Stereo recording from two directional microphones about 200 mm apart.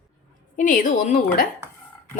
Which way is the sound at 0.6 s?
40° left (ahead or behind).